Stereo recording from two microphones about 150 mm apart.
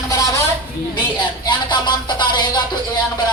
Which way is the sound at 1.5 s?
30° left (ahead or behind).